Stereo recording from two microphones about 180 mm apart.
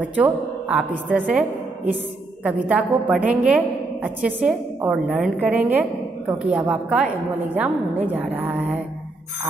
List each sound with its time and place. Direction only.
0.0 s a woman's voice: 10° right (ahead or behind)
2.7 s a woman's voice: 5° right (ahead or behind)